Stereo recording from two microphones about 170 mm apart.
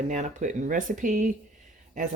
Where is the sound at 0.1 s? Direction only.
45° right (ahead or behind).